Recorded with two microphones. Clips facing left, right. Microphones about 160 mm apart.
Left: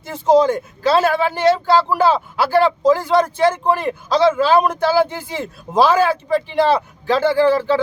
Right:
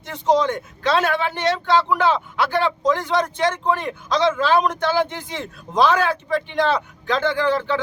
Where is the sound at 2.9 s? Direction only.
5° left (ahead or behind).